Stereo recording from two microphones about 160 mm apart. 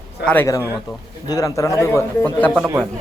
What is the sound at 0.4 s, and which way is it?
A man's voice, 20° left (ahead or behind).